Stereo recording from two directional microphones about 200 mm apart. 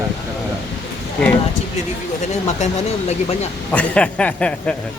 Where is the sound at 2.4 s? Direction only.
35° left (ahead or behind).